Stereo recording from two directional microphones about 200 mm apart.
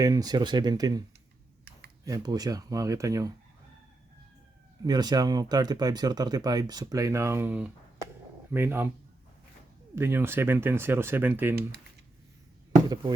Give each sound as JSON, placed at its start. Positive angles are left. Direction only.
{"t": 0.0, "sound": "speech", "side_deg": -15}
{"t": 2.0, "sound": "speech", "side_deg": -20}
{"t": 4.9, "sound": "speech", "side_deg": -20}
{"t": 9.9, "sound": "speech", "side_deg": -10}
{"t": 12.9, "sound": "speech", "side_deg": -20}